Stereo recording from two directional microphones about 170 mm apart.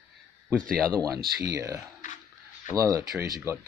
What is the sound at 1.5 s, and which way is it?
Speech, 20° right (ahead or behind).